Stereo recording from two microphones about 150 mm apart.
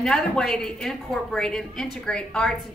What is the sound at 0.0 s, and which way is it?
A woman's voice, 5° left (ahead or behind).